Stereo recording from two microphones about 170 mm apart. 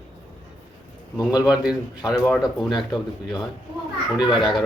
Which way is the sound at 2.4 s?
Centre (ahead or behind).